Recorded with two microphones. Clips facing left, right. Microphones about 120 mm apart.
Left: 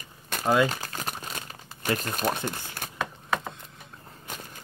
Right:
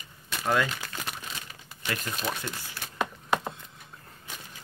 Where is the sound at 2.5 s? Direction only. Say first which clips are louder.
Left 3 dB; 45° left (ahead or behind).